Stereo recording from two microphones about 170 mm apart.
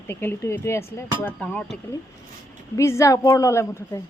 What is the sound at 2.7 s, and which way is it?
Speech, 15° left (ahead or behind).